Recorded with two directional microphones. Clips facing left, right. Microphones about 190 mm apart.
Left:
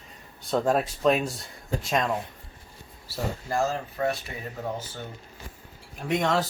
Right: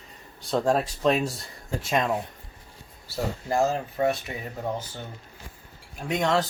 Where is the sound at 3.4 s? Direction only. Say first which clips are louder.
Right 4 dB; 20° right (ahead or behind).